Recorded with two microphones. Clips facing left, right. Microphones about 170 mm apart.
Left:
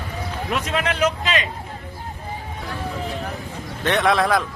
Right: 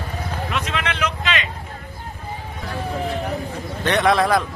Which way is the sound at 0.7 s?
40° left (ahead or behind).